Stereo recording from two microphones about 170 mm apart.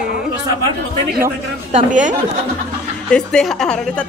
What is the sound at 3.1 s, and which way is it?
Speech, 5° left (ahead or behind).